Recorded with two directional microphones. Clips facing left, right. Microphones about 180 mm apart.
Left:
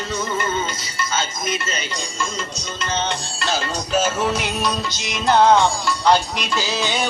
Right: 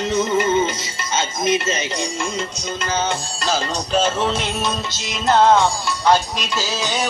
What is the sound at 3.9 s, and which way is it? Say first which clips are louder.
Music: right 1 dB; 30° right (ahead or behind).